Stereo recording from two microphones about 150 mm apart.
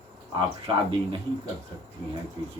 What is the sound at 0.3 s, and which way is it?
Speech, 35° right (ahead or behind).